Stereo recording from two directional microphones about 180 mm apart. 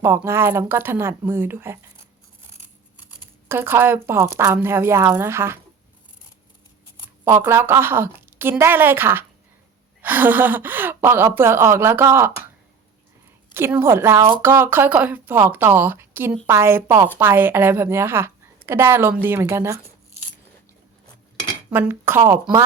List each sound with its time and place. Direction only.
0.0 s a woman's voice: 15° right (ahead or behind)
3.5 s a woman's voice: 15° right (ahead or behind)
7.3 s a woman's voice: 15° right (ahead or behind)
13.5 s a woman's voice: 10° right (ahead or behind)
21.7 s a woman's voice: 10° right (ahead or behind)